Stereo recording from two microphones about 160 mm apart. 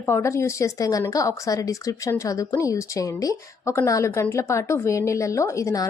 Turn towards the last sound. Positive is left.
turn(degrees=20)  # may be behind; listen again after turning